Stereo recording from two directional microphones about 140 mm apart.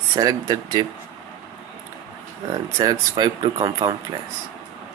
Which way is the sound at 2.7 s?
30° right (ahead or behind).